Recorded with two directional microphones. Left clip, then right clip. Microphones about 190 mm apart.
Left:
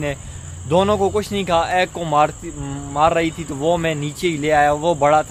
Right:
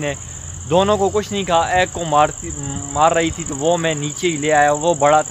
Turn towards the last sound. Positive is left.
turn(degrees=0)  # may be behind; listen again after turning